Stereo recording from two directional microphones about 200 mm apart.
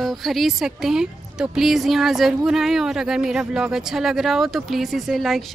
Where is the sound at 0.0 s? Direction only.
Centre (ahead or behind).